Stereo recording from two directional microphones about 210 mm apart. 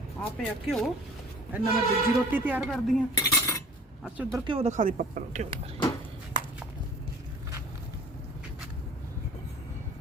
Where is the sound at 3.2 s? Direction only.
15° left (ahead or behind).